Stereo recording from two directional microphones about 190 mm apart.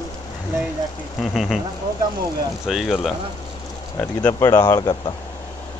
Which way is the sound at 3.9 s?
15° left (ahead or behind).